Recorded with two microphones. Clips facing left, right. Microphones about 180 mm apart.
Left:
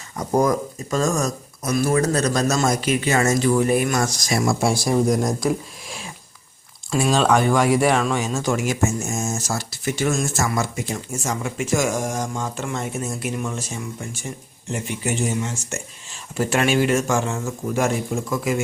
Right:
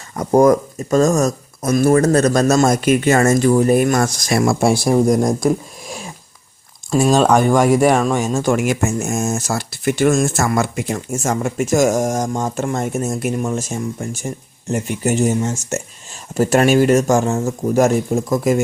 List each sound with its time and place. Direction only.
0.2 s speech: 50° right (ahead or behind)